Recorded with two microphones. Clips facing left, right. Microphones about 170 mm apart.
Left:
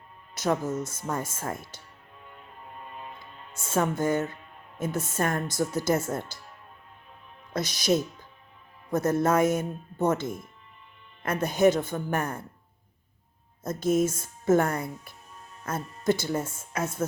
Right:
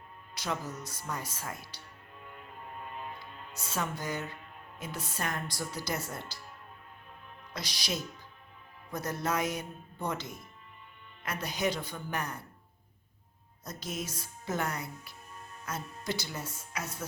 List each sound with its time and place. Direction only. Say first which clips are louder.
0.3 s speech: left 10 dB; 50° left (ahead or behind)
3.6 s speech: left 10 dB; 50° left (ahead or behind)
7.5 s speech: left 12 dB; 50° left (ahead or behind)
13.7 s speech: left 15 dB; 50° left (ahead or behind)